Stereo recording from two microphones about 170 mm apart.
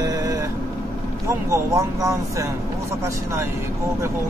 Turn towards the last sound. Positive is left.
turn(degrees=-15)  # may be behind; listen again after turning